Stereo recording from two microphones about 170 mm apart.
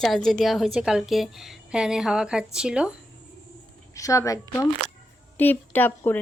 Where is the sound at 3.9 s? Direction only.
20° left (ahead or behind).